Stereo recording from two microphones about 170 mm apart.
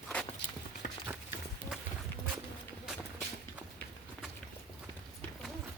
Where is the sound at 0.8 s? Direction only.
55° left (ahead or behind).